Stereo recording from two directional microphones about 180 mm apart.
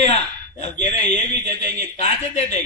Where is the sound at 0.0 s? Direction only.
40° left (ahead or behind).